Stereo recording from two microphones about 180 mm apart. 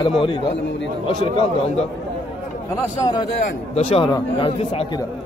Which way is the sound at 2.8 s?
20° left (ahead or behind).